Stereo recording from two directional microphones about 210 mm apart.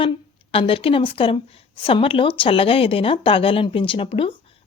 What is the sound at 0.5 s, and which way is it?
Speech, 25° left (ahead or behind).